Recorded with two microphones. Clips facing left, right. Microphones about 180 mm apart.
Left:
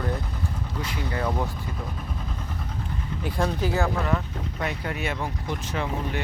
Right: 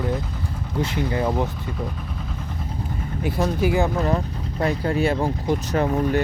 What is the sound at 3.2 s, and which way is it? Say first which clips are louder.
Speech: right 5 dB; 10° right (ahead or behind).